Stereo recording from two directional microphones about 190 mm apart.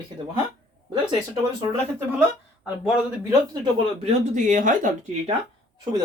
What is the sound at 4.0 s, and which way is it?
Speech, 35° right (ahead or behind).